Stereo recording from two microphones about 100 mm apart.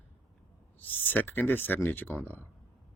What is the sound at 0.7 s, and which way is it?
Speech, 20° left (ahead or behind).